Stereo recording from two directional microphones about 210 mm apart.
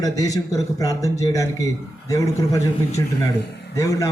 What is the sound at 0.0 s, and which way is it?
A man's voice, 15° left (ahead or behind).